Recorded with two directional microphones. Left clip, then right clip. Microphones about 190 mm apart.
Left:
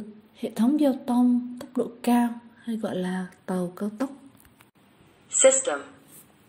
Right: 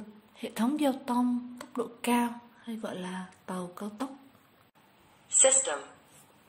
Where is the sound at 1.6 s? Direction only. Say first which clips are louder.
Left 6 dB; 10° left (ahead or behind).